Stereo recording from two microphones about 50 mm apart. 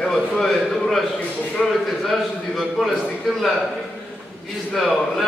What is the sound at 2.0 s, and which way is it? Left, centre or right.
Speech, centre.